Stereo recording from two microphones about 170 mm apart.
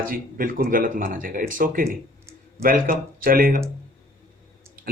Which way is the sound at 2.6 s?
55° right (ahead or behind).